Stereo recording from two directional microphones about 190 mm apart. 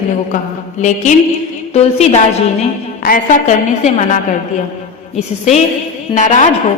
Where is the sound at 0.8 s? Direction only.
40° left (ahead or behind).